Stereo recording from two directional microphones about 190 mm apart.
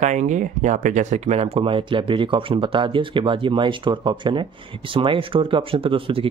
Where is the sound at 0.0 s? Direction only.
40° right (ahead or behind).